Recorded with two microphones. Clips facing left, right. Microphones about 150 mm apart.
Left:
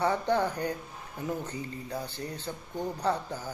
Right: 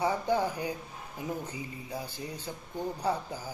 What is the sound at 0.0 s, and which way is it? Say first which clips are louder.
Speech: left 1 dB; 10° right (ahead or behind).